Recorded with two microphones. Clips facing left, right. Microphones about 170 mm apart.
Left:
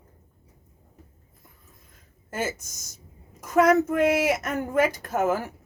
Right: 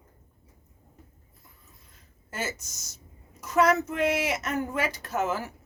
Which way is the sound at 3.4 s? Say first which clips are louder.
Left 4 dB; 50° left (ahead or behind).